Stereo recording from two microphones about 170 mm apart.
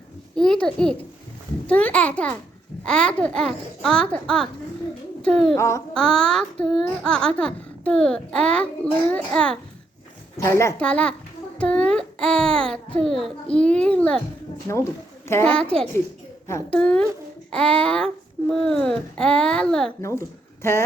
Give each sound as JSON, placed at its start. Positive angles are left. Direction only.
{"t": 0.3, "sound": "a child's voice", "side_deg": 5}
{"t": 5.5, "sound": "a child's voice", "side_deg": 15}
{"t": 5.9, "sound": "a child's voice", "side_deg": 5}
{"t": 10.3, "sound": "a child's voice", "side_deg": 15}
{"t": 15.3, "sound": "a child's voice", "side_deg": 15}
{"t": 20.0, "sound": "speech", "side_deg": 15}